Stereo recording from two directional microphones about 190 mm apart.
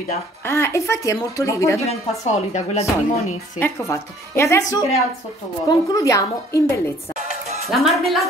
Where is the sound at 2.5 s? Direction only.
35° left (ahead or behind).